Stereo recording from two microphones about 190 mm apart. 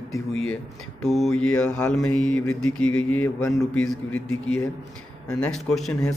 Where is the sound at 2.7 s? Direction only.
90° left.